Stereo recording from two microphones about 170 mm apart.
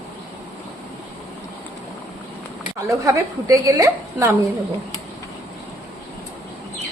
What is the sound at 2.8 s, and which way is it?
Speech, 20° right (ahead or behind).